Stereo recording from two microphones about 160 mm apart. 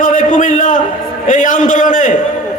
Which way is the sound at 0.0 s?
55° left (ahead or behind).